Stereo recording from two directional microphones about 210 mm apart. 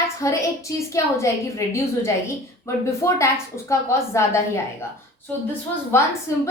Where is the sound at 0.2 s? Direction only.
15° left (ahead or behind).